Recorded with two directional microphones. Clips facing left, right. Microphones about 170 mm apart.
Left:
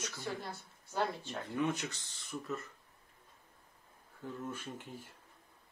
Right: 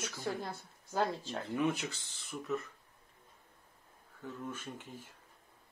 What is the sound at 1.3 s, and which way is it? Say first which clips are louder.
Speech: right 1 dB; 25° right (ahead or behind).